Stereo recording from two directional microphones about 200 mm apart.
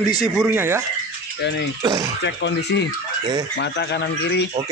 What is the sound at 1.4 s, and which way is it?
Speech, 60° left (ahead or behind).